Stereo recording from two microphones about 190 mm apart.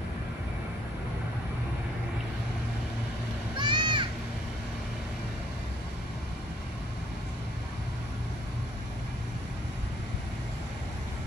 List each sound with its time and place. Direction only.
3.5 s music: 25° right (ahead or behind)